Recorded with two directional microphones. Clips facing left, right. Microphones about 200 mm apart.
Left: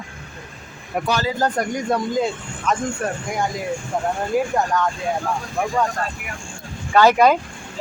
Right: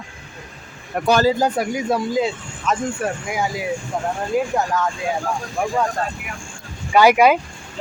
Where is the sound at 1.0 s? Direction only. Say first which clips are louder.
Right 7 dB; 45° right (ahead or behind).